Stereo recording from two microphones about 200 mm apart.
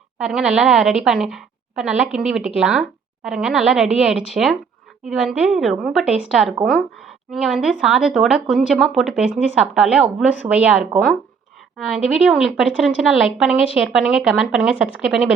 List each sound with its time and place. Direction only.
0.2 s speech: 5° right (ahead or behind)